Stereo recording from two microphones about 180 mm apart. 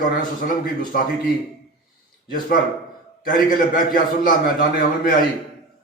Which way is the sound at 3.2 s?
50° left (ahead or behind).